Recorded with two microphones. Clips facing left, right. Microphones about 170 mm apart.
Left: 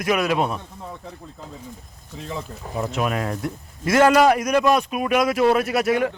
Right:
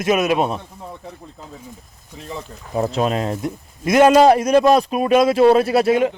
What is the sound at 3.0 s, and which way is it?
A man's voice, 25° right (ahead or behind).